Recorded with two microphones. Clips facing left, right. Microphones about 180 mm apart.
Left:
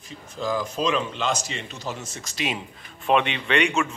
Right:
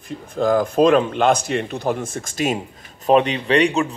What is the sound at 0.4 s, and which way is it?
Speech, 55° right (ahead or behind).